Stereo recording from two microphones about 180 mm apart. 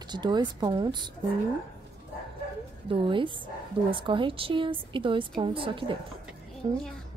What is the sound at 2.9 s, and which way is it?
A woman's voice, 30° right (ahead or behind).